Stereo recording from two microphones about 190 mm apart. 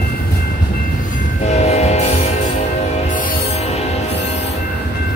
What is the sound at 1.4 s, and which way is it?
Train, 35° left (ahead or behind).